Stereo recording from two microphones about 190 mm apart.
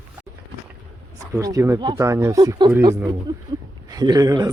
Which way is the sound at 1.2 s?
20° right (ahead or behind).